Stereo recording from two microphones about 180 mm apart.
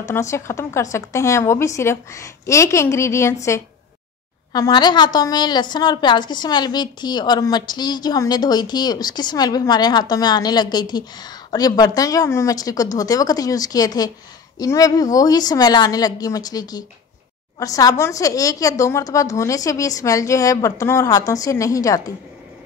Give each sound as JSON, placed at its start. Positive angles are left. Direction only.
{"t": 0.0, "sound": "a woman's voice", "side_deg": 15}